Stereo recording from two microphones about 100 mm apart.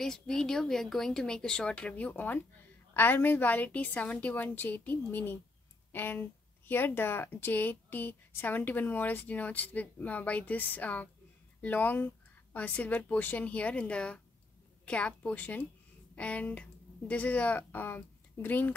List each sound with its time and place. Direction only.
0.0 s a woman's voice: 5° left (ahead or behind)